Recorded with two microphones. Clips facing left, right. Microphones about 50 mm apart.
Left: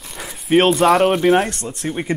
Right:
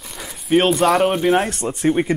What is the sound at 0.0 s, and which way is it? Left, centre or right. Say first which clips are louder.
Speech: left 1 dB; centre.